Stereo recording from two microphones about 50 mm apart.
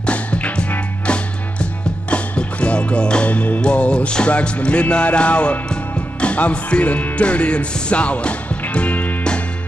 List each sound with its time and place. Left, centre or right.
0.0 s music: left
6.2 s speech: left